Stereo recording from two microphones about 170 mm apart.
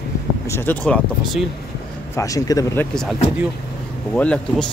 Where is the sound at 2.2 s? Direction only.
20° left (ahead or behind).